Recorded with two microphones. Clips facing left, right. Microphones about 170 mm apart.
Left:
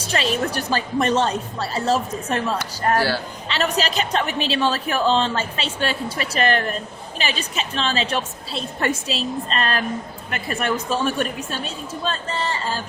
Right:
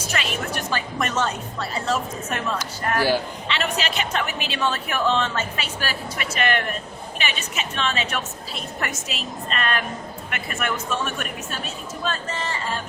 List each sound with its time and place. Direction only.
0.1 s speech: 35° left (ahead or behind)